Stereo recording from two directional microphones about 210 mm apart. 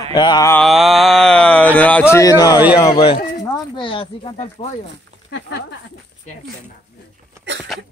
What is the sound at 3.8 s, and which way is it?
Speech, 25° left (ahead or behind).